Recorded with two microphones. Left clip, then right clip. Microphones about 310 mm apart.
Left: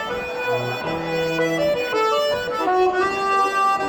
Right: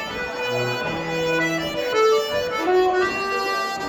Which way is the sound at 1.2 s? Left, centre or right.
Centre.